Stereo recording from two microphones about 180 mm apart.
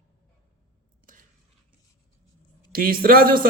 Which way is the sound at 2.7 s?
55° right (ahead or behind).